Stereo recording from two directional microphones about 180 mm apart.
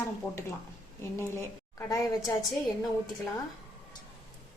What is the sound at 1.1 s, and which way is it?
Speech, 15° left (ahead or behind).